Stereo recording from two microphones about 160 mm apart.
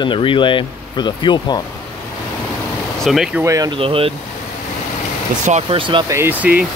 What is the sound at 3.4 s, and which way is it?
Speech, 20° right (ahead or behind).